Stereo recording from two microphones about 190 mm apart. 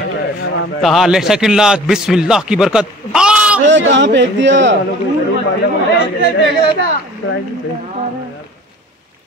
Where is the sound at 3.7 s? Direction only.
70° right (ahead or behind).